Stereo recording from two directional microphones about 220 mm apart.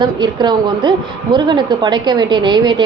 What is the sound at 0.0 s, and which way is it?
A woman's voice, 20° right (ahead or behind).